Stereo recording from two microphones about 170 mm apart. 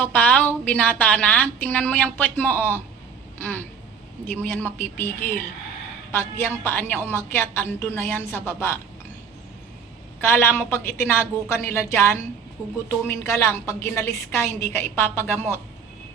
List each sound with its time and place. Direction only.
0.0 s a woman's voice: 10° left (ahead or behind)
10.2 s speech: 15° left (ahead or behind)